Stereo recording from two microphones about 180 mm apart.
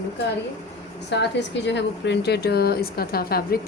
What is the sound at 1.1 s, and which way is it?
A woman's voice, 75° left (ahead or behind).